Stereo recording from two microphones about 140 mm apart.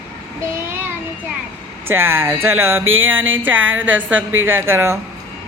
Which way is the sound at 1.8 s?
15° right (ahead or behind).